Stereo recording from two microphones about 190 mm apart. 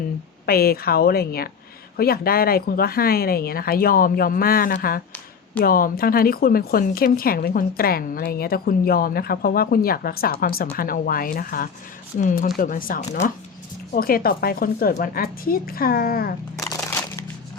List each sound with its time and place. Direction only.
0.4 s a woman's voice: 55° left (ahead or behind)
16.6 s crumpling: 20° left (ahead or behind)